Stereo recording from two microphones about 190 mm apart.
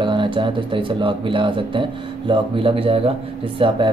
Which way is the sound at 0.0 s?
25° right (ahead or behind).